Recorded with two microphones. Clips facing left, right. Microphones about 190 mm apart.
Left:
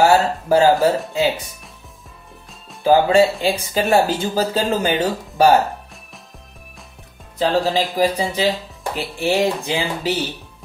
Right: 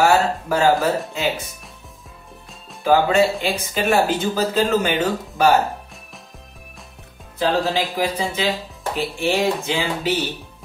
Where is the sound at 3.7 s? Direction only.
35° left (ahead or behind).